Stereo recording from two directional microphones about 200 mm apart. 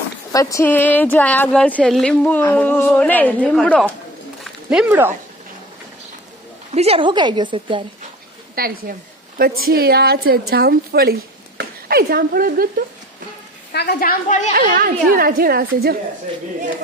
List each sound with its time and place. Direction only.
0.3 s speech: 10° left (ahead or behind); by 5.1 s 10° right (ahead or behind)
6.7 s a woman's voice: 30° right (ahead or behind)
8.5 s a woman's voice: 50° right (ahead or behind)
13.7 s speech: 50° left (ahead or behind)
14.5 s a woman's voice: 45° right (ahead or behind)